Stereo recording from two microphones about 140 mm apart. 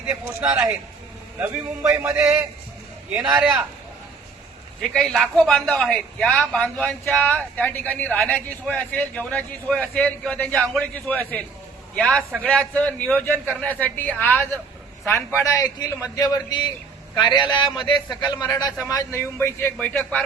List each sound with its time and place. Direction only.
0.1 s a man's voice: 5° right (ahead or behind)
1.8 s music: 20° right (ahead or behind)
3.2 s a man's voice: 10° right (ahead or behind)
4.8 s a man's voice: centre (ahead or behind)